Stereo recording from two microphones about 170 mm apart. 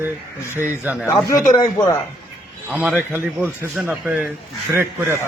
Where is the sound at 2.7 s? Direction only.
5° right (ahead or behind).